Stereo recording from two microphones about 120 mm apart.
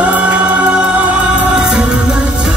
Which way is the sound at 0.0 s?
10° right (ahead or behind).